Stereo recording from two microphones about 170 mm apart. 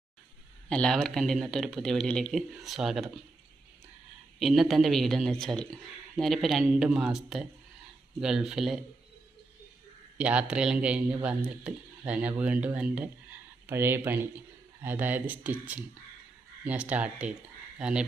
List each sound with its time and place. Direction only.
0.7 s speech: 5° left (ahead or behind)
4.4 s speech: centre (ahead or behind)
10.2 s speech: 5° right (ahead or behind)